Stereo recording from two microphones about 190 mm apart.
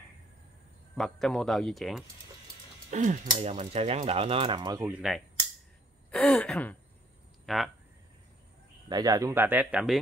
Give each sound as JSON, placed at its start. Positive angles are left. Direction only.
{"t": 0.9, "sound": "speech", "side_deg": 0}
{"t": 2.9, "sound": "speech", "side_deg": -40}
{"t": 4.8, "sound": "speech", "side_deg": -5}
{"t": 8.8, "sound": "speech", "side_deg": -20}